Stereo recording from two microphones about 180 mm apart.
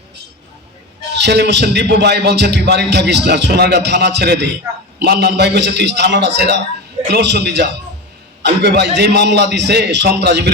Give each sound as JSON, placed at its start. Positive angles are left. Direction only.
{"t": 1.2, "sound": "a man's voice", "side_deg": -70}